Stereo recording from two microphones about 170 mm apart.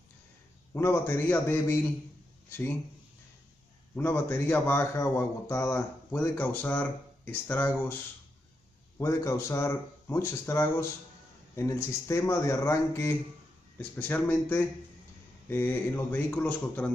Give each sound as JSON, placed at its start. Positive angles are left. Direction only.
{"t": 0.7, "sound": "a man's voice", "side_deg": 15}
{"t": 3.9, "sound": "a man's voice", "side_deg": 10}
{"t": 8.9, "sound": "a man's voice", "side_deg": 15}